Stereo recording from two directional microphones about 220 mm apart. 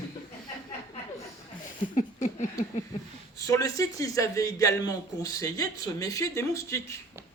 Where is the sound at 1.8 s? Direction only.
35° left (ahead or behind).